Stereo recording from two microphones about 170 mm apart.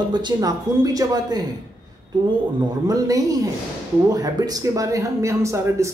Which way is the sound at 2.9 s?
20° right (ahead or behind).